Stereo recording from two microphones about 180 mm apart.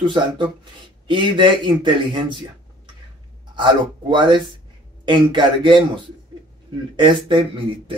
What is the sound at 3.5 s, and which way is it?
A man's voice, 25° right (ahead or behind).